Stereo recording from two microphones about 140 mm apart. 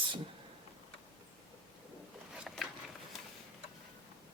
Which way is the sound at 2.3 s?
5° right (ahead or behind).